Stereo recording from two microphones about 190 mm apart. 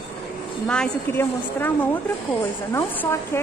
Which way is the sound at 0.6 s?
10° left (ahead or behind).